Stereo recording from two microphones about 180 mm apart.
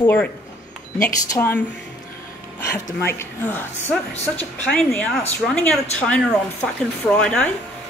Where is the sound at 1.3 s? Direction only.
10° left (ahead or behind).